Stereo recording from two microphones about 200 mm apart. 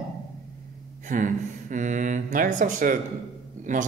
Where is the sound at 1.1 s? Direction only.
40° right (ahead or behind).